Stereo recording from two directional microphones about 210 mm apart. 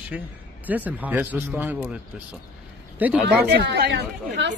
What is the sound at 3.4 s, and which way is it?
Speech, 50° right (ahead or behind).